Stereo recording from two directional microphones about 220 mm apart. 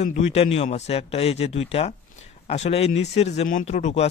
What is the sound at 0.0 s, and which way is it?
A man's voice, 30° left (ahead or behind).